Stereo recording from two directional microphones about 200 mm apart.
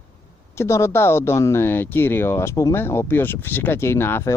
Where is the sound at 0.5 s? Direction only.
15° left (ahead or behind).